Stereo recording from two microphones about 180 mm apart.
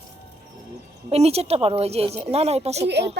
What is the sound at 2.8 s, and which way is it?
Speech, 70° right (ahead or behind).